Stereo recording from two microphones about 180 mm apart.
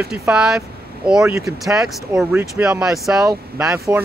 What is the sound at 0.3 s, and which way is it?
Speech, 5° right (ahead or behind).